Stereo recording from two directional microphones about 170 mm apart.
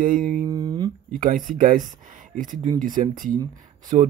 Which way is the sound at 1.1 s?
55° right (ahead or behind).